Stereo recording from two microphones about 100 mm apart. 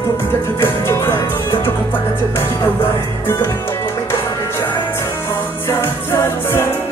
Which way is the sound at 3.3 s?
35° left (ahead or behind).